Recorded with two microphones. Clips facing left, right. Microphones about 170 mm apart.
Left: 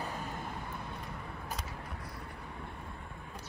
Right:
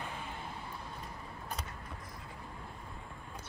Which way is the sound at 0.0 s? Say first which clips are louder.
Left 3 dB; 40° left (ahead or behind).